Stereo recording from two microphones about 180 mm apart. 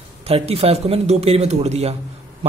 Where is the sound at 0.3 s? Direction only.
35° right (ahead or behind).